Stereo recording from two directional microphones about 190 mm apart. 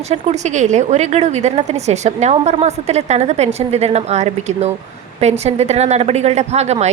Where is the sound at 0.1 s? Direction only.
35° right (ahead or behind).